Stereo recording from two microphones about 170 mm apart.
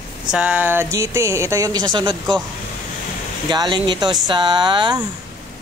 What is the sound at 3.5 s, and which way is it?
Speech, 25° right (ahead or behind).